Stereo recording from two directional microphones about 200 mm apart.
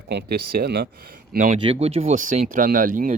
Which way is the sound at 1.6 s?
30° right (ahead or behind).